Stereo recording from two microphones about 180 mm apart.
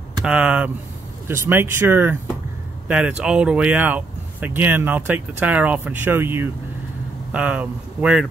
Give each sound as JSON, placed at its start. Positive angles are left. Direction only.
{"t": 0.2, "sound": "speech", "side_deg": -10}